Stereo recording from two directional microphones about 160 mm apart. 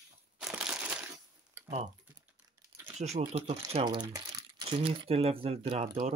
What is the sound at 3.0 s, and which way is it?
Speech, 40° right (ahead or behind).